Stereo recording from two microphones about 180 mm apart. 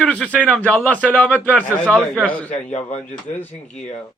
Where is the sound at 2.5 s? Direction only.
40° left (ahead or behind).